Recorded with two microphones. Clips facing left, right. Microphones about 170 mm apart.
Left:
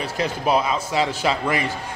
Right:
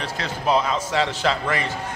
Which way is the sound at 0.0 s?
10° left (ahead or behind).